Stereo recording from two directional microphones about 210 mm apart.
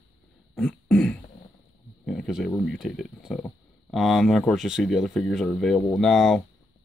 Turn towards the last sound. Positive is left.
turn(degrees=0)  # may be behind; listen again after turning